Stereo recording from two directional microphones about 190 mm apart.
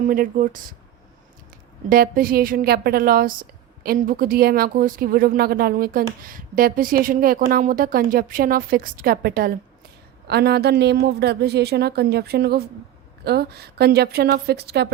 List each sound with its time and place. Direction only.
0.0 s a woman's voice: 45° right (ahead or behind)
1.9 s a woman's voice: 50° right (ahead or behind)